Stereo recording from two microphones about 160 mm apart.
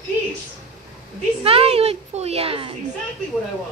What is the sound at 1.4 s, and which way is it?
A child's voice, 35° right (ahead or behind).